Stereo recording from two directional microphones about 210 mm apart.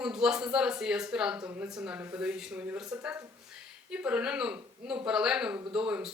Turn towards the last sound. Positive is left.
turn(degrees=-5)  # may be behind; listen again after turning